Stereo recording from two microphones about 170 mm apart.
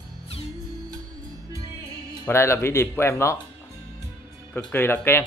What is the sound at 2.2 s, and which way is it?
Speech, 15° left (ahead or behind).